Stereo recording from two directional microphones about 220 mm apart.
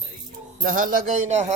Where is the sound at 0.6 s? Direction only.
40° right (ahead or behind).